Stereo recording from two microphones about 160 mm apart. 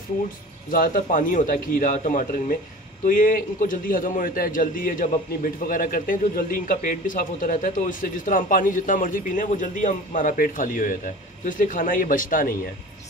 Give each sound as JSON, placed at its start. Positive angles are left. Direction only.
{"t": 0.7, "sound": "a man's voice", "side_deg": 60}